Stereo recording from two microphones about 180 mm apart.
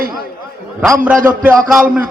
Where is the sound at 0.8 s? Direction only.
10° right (ahead or behind).